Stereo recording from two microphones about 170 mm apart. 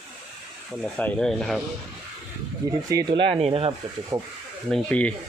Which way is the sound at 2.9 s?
25° right (ahead or behind).